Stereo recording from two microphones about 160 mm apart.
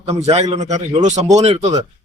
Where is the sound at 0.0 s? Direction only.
40° right (ahead or behind).